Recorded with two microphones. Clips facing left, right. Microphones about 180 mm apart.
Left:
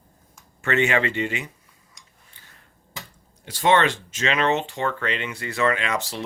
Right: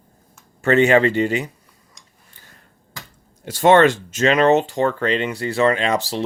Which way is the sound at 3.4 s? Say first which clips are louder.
Right 7 dB; 45° right (ahead or behind).